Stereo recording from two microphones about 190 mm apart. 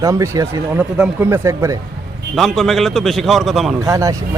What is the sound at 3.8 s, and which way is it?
Speech, 15° right (ahead or behind).